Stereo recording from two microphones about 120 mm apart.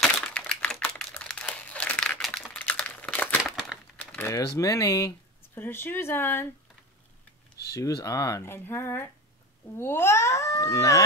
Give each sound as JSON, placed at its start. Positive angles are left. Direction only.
{"t": 0.3, "sound": "typing", "side_deg": 10}
{"t": 1.1, "sound": "crumpling", "side_deg": 10}
{"t": 3.5, "sound": "crumpling", "side_deg": -5}
{"t": 3.9, "sound": "typing", "side_deg": 10}
{"t": 4.3, "sound": "speech", "side_deg": 30}
{"t": 5.5, "sound": "speech", "side_deg": 20}
{"t": 7.7, "sound": "speech", "side_deg": 30}